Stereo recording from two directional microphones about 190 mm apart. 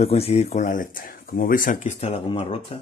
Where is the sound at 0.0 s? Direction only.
35° left (ahead or behind).